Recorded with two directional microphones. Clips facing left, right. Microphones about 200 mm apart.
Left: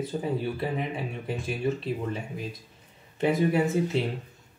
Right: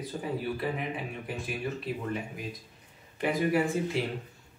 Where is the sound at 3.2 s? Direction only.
25° left (ahead or behind).